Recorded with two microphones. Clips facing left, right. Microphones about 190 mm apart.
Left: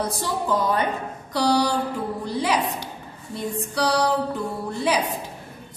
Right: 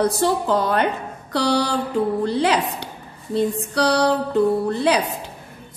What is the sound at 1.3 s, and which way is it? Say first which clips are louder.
Speech: right 1 dB; 65° right (ahead or behind).